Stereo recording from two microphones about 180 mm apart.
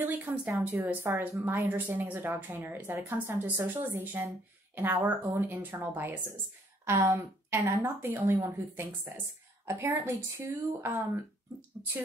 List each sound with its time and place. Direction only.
0.3 s speech: centre (ahead or behind)
0.7 s speech: 15° right (ahead or behind)